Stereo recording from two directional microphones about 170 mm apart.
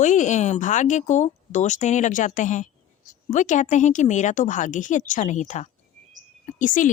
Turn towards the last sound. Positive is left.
turn(degrees=50)  # may be behind; listen again after turning